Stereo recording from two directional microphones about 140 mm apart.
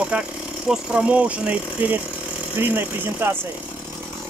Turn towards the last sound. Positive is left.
turn(degrees=-15)  # may be behind; listen again after turning